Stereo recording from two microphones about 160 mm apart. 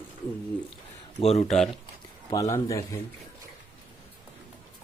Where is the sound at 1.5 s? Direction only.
Centre (ahead or behind).